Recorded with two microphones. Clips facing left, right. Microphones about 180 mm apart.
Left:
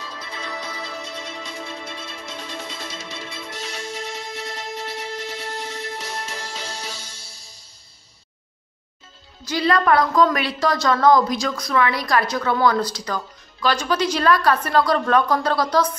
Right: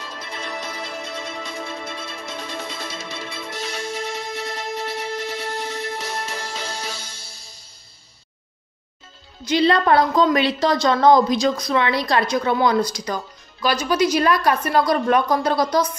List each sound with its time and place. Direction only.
0.9 s music: 50° right (ahead or behind); by 7.5 s 70° right (ahead or behind)
9.5 s a woman's voice: 25° right (ahead or behind)